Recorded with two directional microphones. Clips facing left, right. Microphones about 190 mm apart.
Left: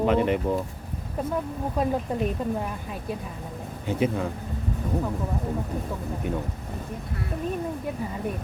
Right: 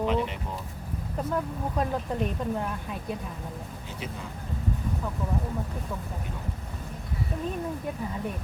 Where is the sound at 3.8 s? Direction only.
55° left (ahead or behind).